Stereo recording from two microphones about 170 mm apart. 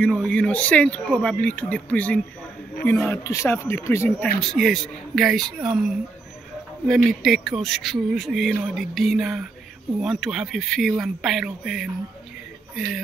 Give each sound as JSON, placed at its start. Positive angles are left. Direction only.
{"t": 0.0, "sound": "speech", "side_deg": 5}
{"t": 4.4, "sound": "a man's voice", "side_deg": 0}